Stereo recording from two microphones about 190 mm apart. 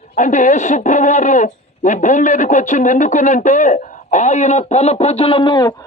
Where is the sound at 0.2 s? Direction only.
40° left (ahead or behind).